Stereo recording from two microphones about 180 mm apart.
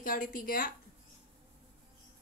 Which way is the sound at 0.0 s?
50° left (ahead or behind).